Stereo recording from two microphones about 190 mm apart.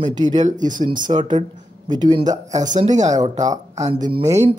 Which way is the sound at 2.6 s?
40° right (ahead or behind).